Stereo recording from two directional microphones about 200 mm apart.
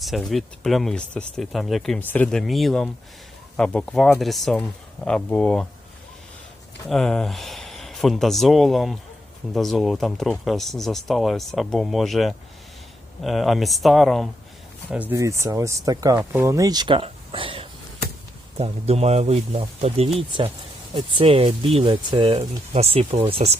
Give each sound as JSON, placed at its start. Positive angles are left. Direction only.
{"t": 0.0, "sound": "speech", "side_deg": 0}
{"t": 6.8, "sound": "speech", "side_deg": 0}